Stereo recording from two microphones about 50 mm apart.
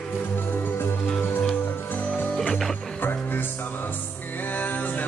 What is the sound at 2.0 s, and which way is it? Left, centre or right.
Music, left.